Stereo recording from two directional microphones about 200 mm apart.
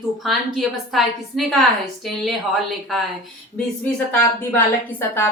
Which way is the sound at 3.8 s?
5° left (ahead or behind).